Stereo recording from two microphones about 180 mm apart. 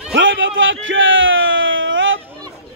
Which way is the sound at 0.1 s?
90° right.